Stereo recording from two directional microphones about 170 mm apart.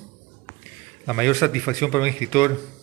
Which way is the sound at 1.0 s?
15° left (ahead or behind).